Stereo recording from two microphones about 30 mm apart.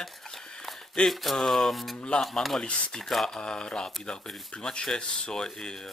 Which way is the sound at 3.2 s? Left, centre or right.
Left.